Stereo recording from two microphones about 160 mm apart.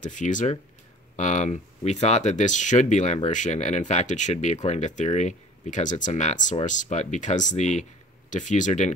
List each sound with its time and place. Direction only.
0.0 s speech: 50° left (ahead or behind)